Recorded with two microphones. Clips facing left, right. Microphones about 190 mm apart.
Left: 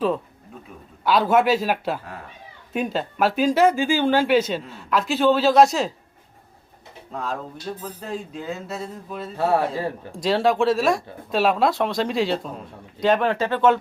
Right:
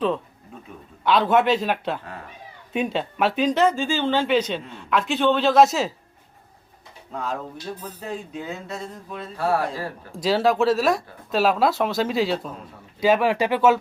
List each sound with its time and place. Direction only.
1.0 s speech: 5° left (ahead or behind)
7.1 s speech: centre (ahead or behind)
9.4 s speech: 20° left (ahead or behind)
10.1 s speech: centre (ahead or behind)